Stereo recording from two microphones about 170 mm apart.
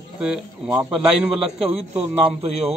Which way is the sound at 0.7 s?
5° right (ahead or behind).